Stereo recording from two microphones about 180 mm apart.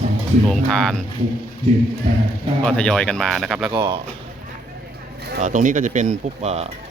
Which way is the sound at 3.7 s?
25° right (ahead or behind).